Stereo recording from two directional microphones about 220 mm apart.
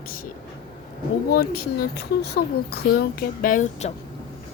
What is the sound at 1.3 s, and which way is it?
Speech, 45° left (ahead or behind).